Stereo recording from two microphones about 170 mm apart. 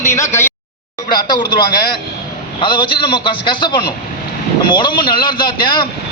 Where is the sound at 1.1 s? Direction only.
25° left (ahead or behind).